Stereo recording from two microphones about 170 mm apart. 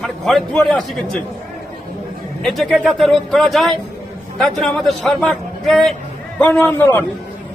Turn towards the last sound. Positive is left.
turn(degrees=10)  # may be behind; listen again after turning